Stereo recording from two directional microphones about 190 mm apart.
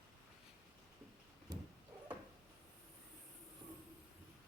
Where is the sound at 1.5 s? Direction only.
20° right (ahead or behind).